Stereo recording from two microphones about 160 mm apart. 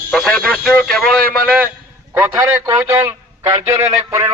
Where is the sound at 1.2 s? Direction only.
70° right (ahead or behind).